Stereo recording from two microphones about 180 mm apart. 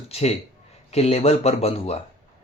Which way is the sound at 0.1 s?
35° left (ahead or behind).